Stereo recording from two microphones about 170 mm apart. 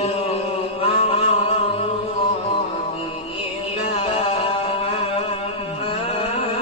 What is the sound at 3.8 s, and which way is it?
Music, 35° left (ahead or behind).